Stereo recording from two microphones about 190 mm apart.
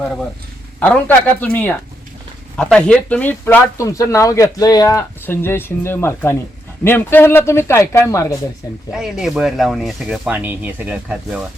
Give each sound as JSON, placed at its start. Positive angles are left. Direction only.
{"t": 0.8, "sound": "speech", "side_deg": 10}
{"t": 8.9, "sound": "speech", "side_deg": -5}